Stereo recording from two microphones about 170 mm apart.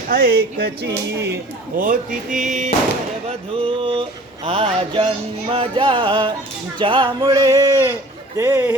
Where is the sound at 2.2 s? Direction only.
50° right (ahead or behind).